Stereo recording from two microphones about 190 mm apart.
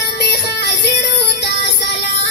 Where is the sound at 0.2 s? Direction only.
60° left (ahead or behind).